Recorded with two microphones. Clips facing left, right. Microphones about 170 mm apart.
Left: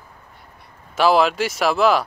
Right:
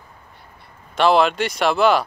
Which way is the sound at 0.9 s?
5° left (ahead or behind).